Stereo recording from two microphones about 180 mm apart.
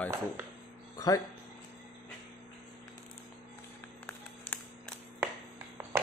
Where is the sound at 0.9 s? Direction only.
20° left (ahead or behind).